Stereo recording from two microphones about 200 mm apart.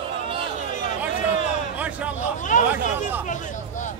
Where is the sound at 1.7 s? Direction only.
5° right (ahead or behind).